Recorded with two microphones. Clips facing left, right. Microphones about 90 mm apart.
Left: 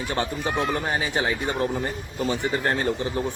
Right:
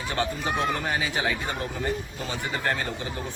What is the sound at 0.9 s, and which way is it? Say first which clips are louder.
A man's voice: left 2 dB; 30° left (ahead or behind).